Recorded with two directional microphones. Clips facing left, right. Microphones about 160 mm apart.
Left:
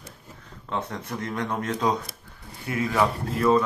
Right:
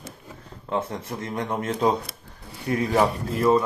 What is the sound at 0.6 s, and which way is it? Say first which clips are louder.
A man's voice: right 3 dB; 25° right (ahead or behind).